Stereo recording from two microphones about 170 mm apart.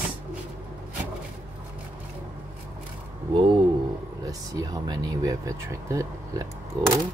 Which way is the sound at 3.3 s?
30° right (ahead or behind).